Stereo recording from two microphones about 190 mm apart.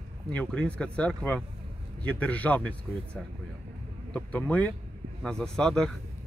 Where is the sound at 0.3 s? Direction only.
5° left (ahead or behind).